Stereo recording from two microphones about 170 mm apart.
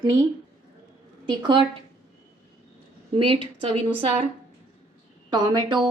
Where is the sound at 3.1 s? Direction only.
30° right (ahead or behind).